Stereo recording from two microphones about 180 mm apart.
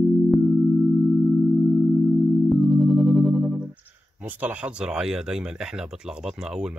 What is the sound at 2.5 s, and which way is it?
Speech, centre (ahead or behind).